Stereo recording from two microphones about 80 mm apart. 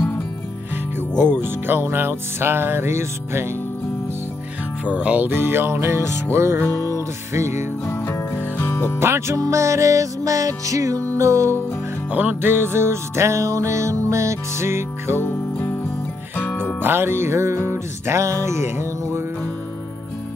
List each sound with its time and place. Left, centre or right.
1.1 s music: right
4.8 s music: centre; by 6.6 s right
7.8 s music: left
9.0 s music: right
12.1 s music: right
16.3 s music: left
16.8 s music: right